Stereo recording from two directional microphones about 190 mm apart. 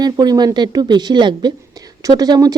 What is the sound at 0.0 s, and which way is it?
A woman's voice, 20° right (ahead or behind).